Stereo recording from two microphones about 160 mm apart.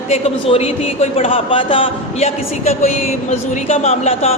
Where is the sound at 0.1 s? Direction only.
40° left (ahead or behind).